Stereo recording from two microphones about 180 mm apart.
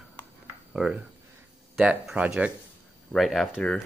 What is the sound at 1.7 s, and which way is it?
Speech, 5° right (ahead or behind).